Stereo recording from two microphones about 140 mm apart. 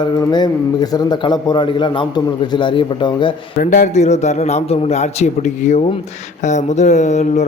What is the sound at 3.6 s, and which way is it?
A man's voice, 65° left (ahead or behind).